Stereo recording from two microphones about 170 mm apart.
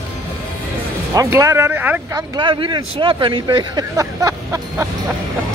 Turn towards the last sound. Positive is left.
turn(degrees=-20)  # may be behind; listen again after turning